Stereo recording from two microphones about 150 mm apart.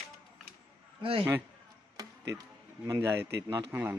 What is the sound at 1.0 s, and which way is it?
Speech, 35° right (ahead or behind).